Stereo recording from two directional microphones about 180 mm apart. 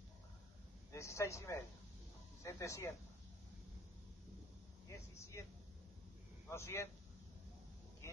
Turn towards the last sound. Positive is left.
turn(degrees=15)  # may be behind; listen again after turning